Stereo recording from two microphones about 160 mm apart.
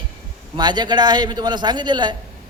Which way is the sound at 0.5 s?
25° right (ahead or behind).